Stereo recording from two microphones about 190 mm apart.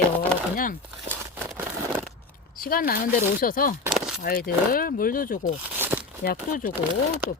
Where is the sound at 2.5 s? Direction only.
50° left (ahead or behind).